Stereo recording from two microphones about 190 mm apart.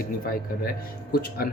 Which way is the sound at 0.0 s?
50° left (ahead or behind).